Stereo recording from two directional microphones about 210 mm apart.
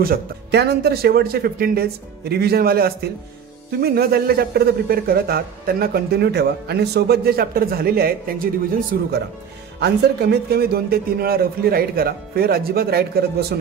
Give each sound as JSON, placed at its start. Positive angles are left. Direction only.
{"t": 0.0, "sound": "a man's voice", "side_deg": -50}